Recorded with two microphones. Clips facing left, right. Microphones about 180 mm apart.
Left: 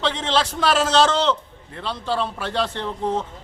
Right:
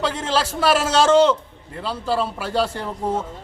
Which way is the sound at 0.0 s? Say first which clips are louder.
Even; 10° right (ahead or behind).